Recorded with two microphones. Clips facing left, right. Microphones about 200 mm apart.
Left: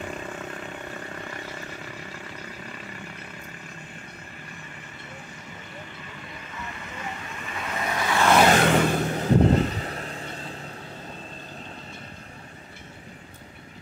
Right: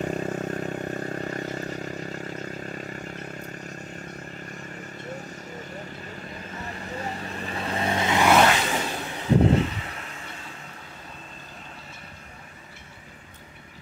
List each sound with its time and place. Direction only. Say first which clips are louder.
0.0 s vehicle: right 7 dB; 40° right (ahead or behind)
6.0 s vehicle: right 4 dB; 40° right (ahead or behind); by 8.3 s 20° right (ahead or behind)
8.5 s vehicle: left 8 dB; 55° left (ahead or behind); by 10.5 s 35° left (ahead or behind)